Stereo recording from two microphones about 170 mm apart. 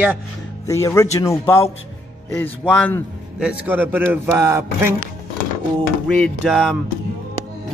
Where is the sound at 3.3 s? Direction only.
10° right (ahead or behind).